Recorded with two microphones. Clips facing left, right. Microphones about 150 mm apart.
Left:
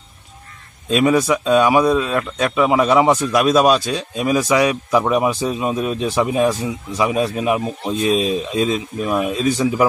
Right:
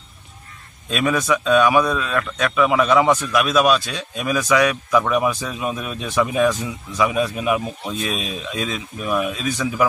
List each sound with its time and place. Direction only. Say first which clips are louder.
0.8 s speech: left 5 dB; 25° left (ahead or behind)